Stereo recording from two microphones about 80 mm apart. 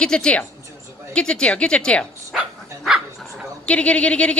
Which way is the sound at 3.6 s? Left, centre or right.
Centre.